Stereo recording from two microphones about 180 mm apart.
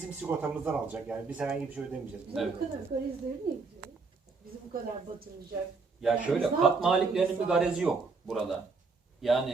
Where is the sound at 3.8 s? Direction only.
60° right (ahead or behind).